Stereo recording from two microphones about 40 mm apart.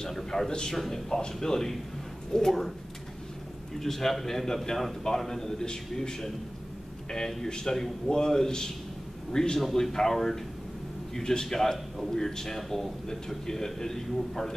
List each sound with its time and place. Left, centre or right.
0.1 s a man's voice: centre
0.5 s a man's voice: centre
0.7 s a man's voice: centre
3.8 s a man's voice: centre